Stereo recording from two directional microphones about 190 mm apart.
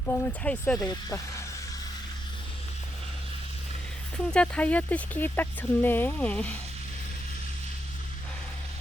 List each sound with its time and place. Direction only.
0.0 s speech: 10° left (ahead or behind)
0.8 s speech: 15° left (ahead or behind)
4.3 s speech: 5° left (ahead or behind)